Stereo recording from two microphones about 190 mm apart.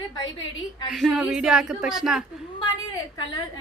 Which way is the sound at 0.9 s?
Centre (ahead or behind).